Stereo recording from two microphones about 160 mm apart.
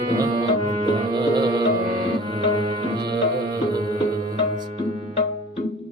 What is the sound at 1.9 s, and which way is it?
Tabla, 30° right (ahead or behind).